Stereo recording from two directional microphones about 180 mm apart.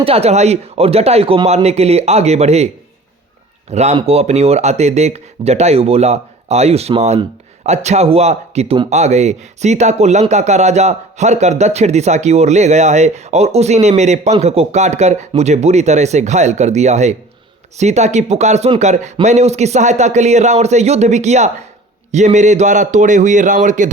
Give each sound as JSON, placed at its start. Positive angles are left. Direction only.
{"t": 0.0, "sound": "speech", "side_deg": -35}
{"t": 3.7, "sound": "speech", "side_deg": -35}